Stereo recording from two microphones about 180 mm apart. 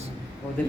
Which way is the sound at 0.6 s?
10° left (ahead or behind).